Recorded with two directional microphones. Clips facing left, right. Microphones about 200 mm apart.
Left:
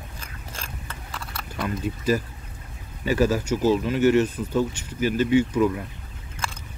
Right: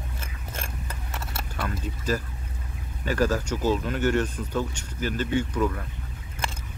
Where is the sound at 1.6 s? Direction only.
10° left (ahead or behind).